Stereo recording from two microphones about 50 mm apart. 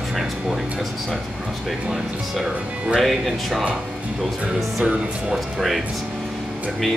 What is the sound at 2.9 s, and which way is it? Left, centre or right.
Speech, centre.